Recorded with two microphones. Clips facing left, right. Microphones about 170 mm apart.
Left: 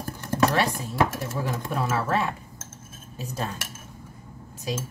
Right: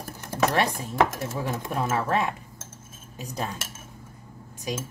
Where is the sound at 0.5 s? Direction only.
20° right (ahead or behind).